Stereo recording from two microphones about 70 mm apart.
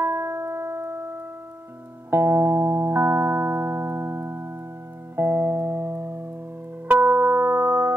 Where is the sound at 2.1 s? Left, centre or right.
Right.